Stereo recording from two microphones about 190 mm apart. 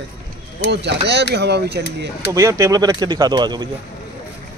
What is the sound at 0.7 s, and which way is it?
Speech, 65° right (ahead or behind).